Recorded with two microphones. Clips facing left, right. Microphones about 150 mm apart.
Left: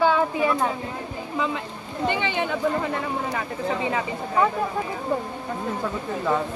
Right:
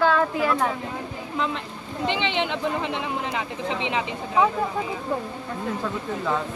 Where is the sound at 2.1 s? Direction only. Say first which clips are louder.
Right 1 dB; 80° right.